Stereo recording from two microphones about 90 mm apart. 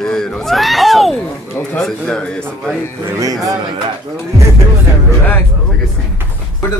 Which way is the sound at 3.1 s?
40° right (ahead or behind).